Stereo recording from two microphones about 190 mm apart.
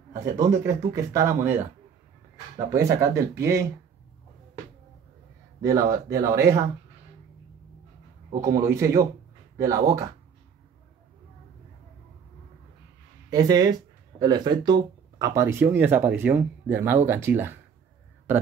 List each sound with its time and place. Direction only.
0.4 s speech: 15° right (ahead or behind)
2.7 s speech: 15° right (ahead or behind)
5.6 s speech: 15° right (ahead or behind)
8.3 s speech: 45° right (ahead or behind)
8.5 s speech: 15° right (ahead or behind)
13.3 s speech: 20° right (ahead or behind)